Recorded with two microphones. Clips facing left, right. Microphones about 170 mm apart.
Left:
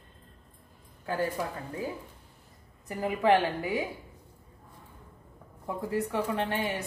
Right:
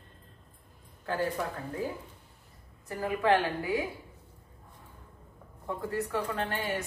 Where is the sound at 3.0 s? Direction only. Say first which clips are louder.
Left 2 dB; 20° left (ahead or behind).